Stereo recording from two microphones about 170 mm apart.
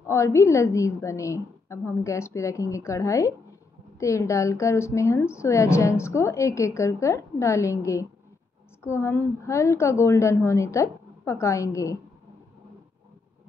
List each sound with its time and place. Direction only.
0.0 s a woman's voice: 15° left (ahead or behind)